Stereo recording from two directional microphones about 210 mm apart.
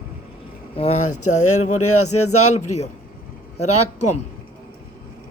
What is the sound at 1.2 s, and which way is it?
Speech, 90° left.